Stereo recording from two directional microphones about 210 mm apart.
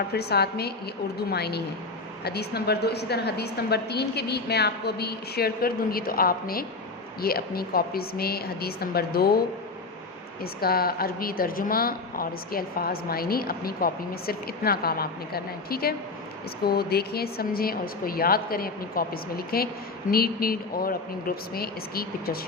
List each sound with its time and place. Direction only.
0.1 s a woman's voice: 50° left (ahead or behind)
10.4 s a woman's voice: 45° left (ahead or behind)